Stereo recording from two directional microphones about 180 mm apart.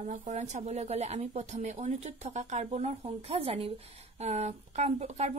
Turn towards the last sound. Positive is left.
turn(degrees=-35)  # may be behind; listen again after turning